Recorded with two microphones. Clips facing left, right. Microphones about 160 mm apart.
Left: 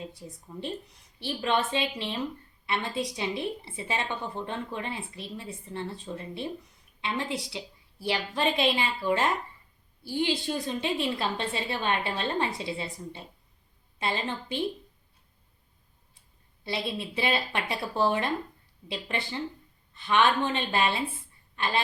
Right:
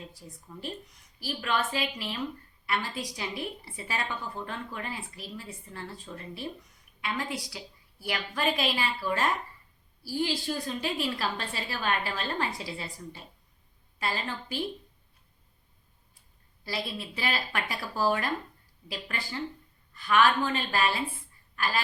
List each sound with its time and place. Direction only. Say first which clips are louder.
0.1 s a woman's voice: left 4 dB; 25° left (ahead or behind)
16.6 s a woman's voice: left 3 dB; 25° left (ahead or behind)
21.5 s a sound: left 1 dB; 25° left (ahead or behind)